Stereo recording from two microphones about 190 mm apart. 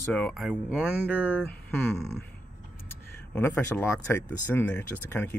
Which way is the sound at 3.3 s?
10° left (ahead or behind).